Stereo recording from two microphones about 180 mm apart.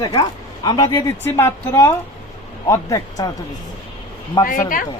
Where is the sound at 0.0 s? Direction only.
25° left (ahead or behind).